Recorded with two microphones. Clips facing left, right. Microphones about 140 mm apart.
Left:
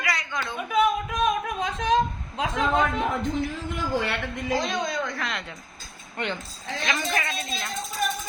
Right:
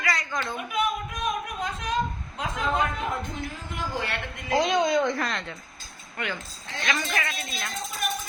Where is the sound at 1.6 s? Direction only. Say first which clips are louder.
Left 5 dB; 90° left.